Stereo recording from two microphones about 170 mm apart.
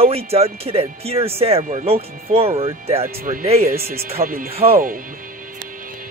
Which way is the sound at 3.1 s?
60° right (ahead or behind).